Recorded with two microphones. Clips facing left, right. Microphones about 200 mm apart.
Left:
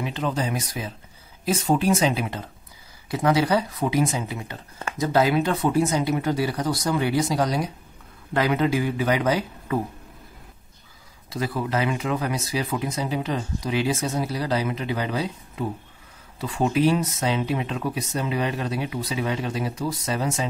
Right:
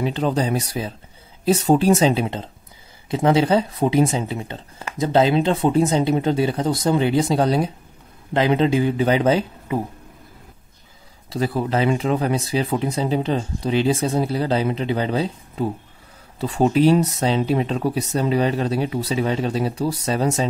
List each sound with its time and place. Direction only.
0.0 s speech: 35° right (ahead or behind)
11.2 s speech: 30° right (ahead or behind)